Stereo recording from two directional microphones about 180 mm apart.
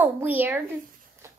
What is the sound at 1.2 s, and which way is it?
Shuffle, 15° right (ahead or behind).